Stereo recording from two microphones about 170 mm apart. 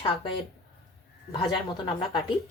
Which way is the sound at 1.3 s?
30° left (ahead or behind).